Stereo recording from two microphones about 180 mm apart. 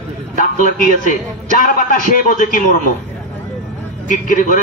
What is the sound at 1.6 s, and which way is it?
A man's voice, 45° left (ahead or behind).